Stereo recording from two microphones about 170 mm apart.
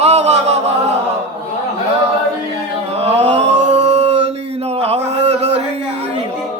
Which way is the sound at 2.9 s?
40° right (ahead or behind).